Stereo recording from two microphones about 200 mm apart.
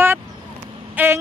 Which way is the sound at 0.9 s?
10° right (ahead or behind).